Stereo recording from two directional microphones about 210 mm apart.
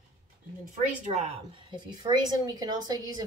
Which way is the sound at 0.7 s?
30° right (ahead or behind).